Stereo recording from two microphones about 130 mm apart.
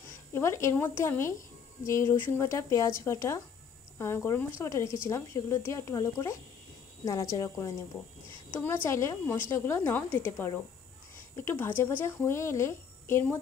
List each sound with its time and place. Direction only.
0.3 s speech: 20° left (ahead or behind)